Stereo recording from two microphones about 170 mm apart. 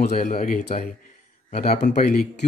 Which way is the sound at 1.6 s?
70° left (ahead or behind).